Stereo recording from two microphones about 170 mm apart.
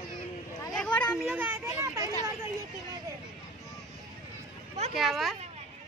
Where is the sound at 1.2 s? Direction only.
10° right (ahead or behind).